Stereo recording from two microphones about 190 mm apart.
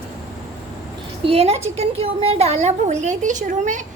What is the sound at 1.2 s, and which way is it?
A woman's voice, 30° right (ahead or behind).